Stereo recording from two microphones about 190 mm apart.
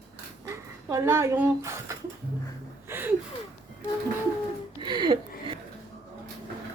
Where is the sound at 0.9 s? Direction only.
15° right (ahead or behind).